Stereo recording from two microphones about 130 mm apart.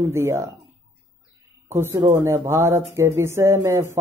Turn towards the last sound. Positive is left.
turn(degrees=-20)  # may be behind; listen again after turning